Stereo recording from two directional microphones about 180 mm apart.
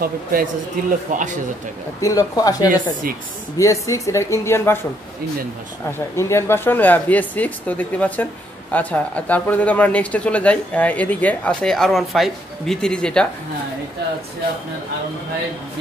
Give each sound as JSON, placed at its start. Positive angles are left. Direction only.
{"t": 0.0, "sound": "speech", "side_deg": -55}
{"t": 2.0, "sound": "speech", "side_deg": 20}
{"t": 6.1, "sound": "speech", "side_deg": 15}